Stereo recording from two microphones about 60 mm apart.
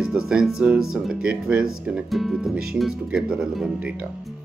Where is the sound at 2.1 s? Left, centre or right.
Centre.